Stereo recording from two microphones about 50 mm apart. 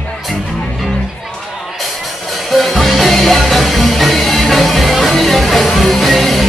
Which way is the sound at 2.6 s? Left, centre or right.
Centre.